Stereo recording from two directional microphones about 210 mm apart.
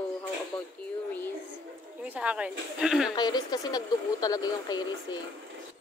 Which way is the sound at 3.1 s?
20° left (ahead or behind).